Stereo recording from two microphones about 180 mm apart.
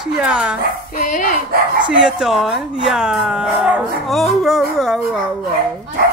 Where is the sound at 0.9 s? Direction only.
45° left (ahead or behind).